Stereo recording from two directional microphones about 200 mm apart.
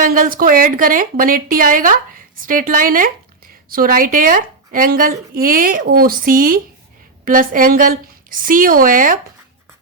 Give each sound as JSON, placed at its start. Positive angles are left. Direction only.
{"t": 0.0, "sound": "a woman's voice", "side_deg": -45}